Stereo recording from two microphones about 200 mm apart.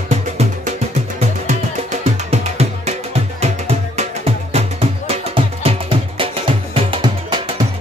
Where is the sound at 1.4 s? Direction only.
35° right (ahead or behind).